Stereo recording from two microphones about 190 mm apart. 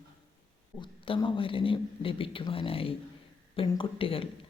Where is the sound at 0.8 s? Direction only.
25° left (ahead or behind).